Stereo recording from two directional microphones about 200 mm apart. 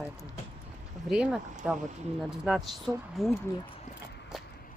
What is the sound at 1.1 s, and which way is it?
Speech, 5° right (ahead or behind).